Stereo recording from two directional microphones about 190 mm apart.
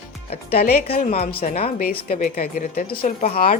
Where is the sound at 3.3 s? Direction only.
50° left (ahead or behind).